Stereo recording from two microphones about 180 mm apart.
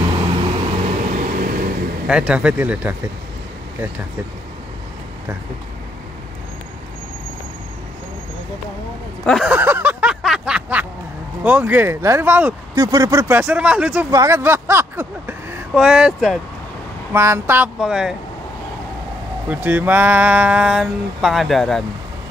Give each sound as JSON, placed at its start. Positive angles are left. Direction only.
{"t": 0.2, "sound": "vehicle", "side_deg": -30}
{"t": 1.1, "sound": "vehicle", "side_deg": -50}
{"t": 2.0, "sound": "speech", "side_deg": -5}
{"t": 9.2, "sound": "speech", "side_deg": 5}
{"t": 9.5, "sound": "a sound", "side_deg": -10}
{"t": 11.4, "sound": "speech", "side_deg": -10}
{"t": 12.7, "sound": "speech", "side_deg": -20}
{"t": 19.5, "sound": "speech", "side_deg": -10}